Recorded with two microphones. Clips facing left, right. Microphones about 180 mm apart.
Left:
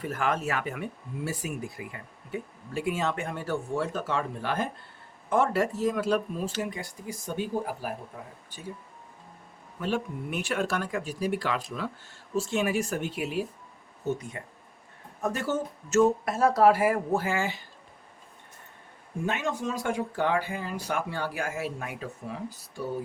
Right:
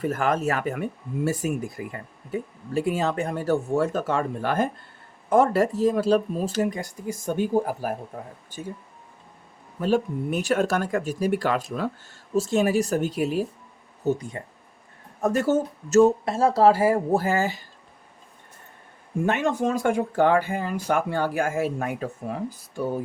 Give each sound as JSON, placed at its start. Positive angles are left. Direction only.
{"t": 0.0, "sound": "speech", "side_deg": -40}
{"t": 9.8, "sound": "speech", "side_deg": -40}
{"t": 16.0, "sound": "speech", "side_deg": -25}
{"t": 19.2, "sound": "speech", "side_deg": -55}